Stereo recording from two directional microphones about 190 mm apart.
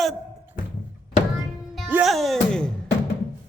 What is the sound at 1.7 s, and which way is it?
Music, 5° right (ahead or behind).